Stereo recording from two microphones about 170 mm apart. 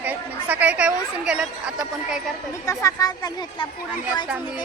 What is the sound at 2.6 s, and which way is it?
Speech, 20° left (ahead or behind).